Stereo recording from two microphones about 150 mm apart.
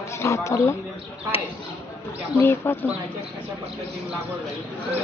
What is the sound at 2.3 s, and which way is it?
Speech, 15° left (ahead or behind).